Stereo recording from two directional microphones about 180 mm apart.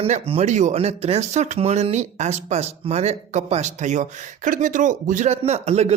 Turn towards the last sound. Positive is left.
turn(degrees=-35)  # may be behind; listen again after turning